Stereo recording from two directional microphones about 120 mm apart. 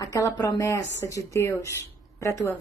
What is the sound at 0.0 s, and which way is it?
A woman's voice, 30° left (ahead or behind).